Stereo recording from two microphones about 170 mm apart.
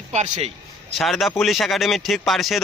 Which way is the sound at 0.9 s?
Centre (ahead or behind).